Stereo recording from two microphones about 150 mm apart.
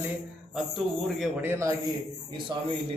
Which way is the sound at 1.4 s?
15° right (ahead or behind).